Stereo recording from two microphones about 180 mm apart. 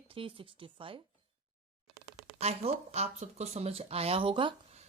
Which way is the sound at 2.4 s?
35° right (ahead or behind).